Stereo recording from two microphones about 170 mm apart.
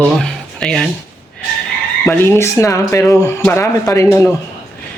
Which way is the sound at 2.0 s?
15° left (ahead or behind).